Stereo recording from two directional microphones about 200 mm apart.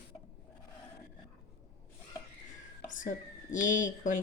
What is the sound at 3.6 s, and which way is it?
Speech, 40° left (ahead or behind).